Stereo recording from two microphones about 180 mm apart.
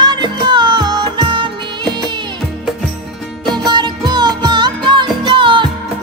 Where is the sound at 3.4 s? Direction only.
25° right (ahead or behind).